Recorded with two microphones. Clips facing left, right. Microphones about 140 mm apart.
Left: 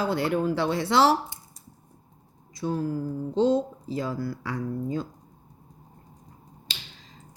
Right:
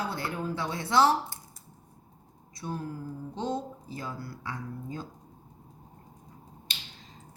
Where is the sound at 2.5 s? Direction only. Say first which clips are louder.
Left 8 dB; 90° left.